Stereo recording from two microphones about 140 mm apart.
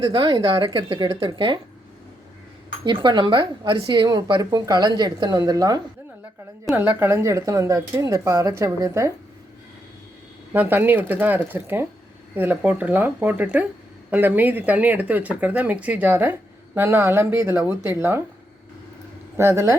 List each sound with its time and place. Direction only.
0.0 s speech: 35° right (ahead or behind)
2.8 s speech: 35° right (ahead or behind)
6.7 s a woman's voice: 15° right (ahead or behind)
10.5 s speech: 15° right (ahead or behind)
19.4 s a woman's voice: 20° right (ahead or behind)